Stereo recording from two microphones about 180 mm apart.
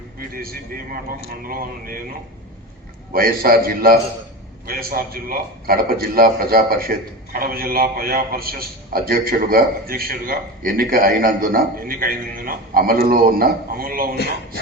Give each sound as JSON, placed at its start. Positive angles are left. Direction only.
{"t": 0.2, "sound": "a man's voice", "side_deg": -55}
{"t": 3.1, "sound": "a man's voice", "side_deg": -55}